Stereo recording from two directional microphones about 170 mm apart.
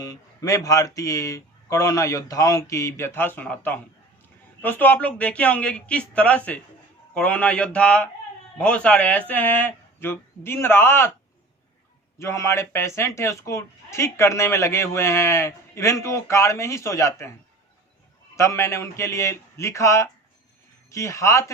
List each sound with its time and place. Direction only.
0.0 s speech: 20° left (ahead or behind)
12.2 s speech: 15° left (ahead or behind)
18.3 s speech: 15° left (ahead or behind)